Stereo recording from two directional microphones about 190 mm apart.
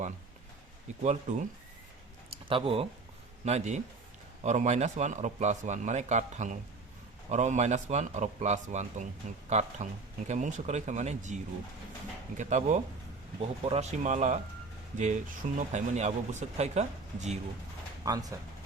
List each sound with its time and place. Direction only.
1.0 s speech: 35° right (ahead or behind)
12.4 s speech: 40° right (ahead or behind)
18.0 s speech: 20° right (ahead or behind)